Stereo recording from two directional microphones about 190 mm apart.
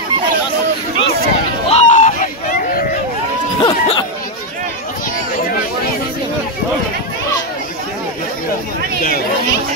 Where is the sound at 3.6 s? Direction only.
20° left (ahead or behind).